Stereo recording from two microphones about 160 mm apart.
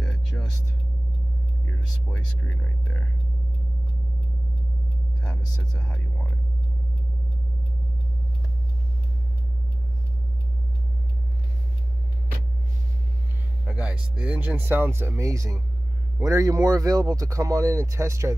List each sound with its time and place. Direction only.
0.0 s music: 5° left (ahead or behind)
2.1 s speech: 5° left (ahead or behind)
5.2 s speech: 5° left (ahead or behind)
13.7 s speech: 5° right (ahead or behind)